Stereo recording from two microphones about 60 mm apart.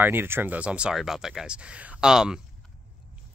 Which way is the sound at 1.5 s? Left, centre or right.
Centre.